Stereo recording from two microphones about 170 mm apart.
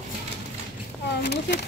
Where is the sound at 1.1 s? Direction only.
75° left (ahead or behind).